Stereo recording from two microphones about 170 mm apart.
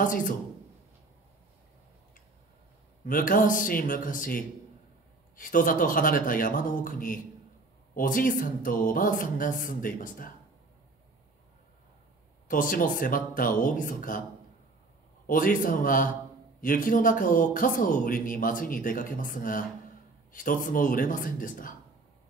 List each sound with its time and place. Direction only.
0.0 s a man's voice: 50° left (ahead or behind)
3.1 s a man's voice: 55° left (ahead or behind)
12.4 s a man's voice: 55° left (ahead or behind)
15.2 s a man's voice: 55° left (ahead or behind)